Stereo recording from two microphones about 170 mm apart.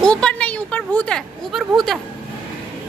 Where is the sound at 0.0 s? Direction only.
5° left (ahead or behind).